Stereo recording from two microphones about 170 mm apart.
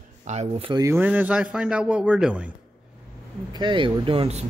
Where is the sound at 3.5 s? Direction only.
30° right (ahead or behind).